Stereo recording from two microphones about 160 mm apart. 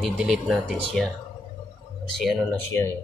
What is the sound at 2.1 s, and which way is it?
Speech, centre (ahead or behind).